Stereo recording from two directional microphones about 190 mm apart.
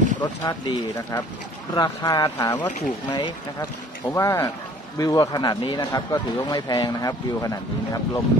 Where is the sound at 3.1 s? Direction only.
25° left (ahead or behind).